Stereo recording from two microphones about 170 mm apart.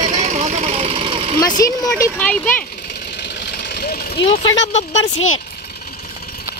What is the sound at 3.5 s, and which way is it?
Vehicle, 70° left (ahead or behind).